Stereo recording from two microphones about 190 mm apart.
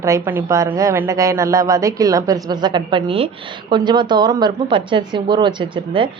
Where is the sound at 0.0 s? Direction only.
15° right (ahead or behind).